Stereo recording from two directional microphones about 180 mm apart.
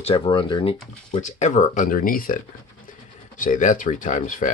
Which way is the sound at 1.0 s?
40° left (ahead or behind).